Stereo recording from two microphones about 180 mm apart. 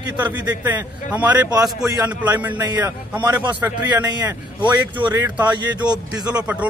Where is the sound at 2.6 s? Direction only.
25° right (ahead or behind).